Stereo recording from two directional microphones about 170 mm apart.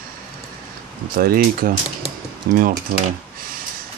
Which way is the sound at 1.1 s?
60° right (ahead or behind).